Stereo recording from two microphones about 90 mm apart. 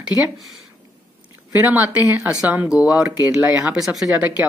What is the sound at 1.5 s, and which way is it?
Speech, 20° right (ahead or behind).